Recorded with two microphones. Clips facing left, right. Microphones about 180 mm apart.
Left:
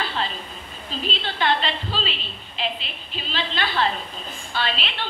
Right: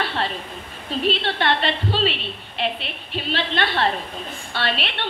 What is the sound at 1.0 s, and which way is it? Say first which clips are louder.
A woman's voice: right 3 dB; 65° right (ahead or behind).